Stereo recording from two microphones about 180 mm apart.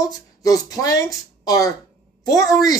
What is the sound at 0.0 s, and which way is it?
A man's voice, 20° left (ahead or behind).